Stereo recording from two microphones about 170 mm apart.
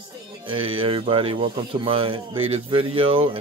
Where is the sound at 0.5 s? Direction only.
30° right (ahead or behind).